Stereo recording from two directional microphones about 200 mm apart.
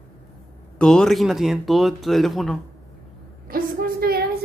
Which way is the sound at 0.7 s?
5° left (ahead or behind).